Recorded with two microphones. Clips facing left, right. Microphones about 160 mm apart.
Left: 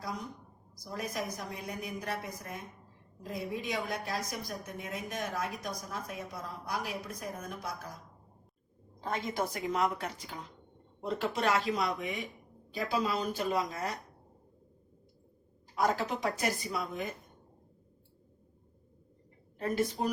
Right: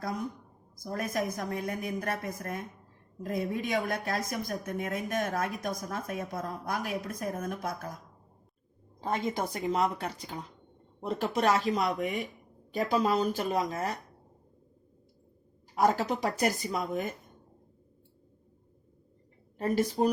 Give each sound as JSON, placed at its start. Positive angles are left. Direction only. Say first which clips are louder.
{"t": 0.8, "sound": "a woman's voice", "louder": "right 5 dB", "side_deg": -50}
{"t": 9.0, "sound": "a woman's voice", "louder": "right 3 dB", "side_deg": -30}
{"t": 15.8, "sound": "speech", "louder": "right 4 dB", "side_deg": -40}
{"t": 19.5, "sound": "speech", "louder": "right 4 dB", "side_deg": -40}